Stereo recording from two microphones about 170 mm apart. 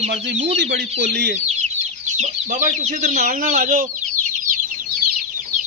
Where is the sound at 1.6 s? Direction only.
40° right (ahead or behind).